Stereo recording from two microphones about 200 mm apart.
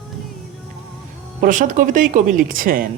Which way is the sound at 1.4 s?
40° right (ahead or behind).